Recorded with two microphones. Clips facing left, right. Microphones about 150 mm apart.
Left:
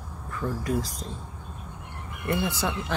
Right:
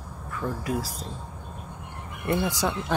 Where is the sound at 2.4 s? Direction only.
15° right (ahead or behind).